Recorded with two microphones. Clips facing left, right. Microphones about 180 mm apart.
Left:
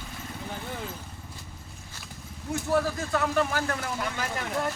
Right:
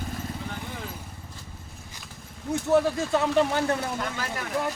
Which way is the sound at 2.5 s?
20° right (ahead or behind).